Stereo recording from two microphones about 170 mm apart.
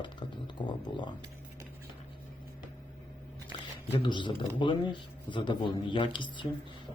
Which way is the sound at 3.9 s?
30° left (ahead or behind).